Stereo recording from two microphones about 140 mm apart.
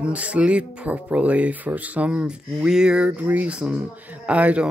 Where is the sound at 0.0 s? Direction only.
10° right (ahead or behind).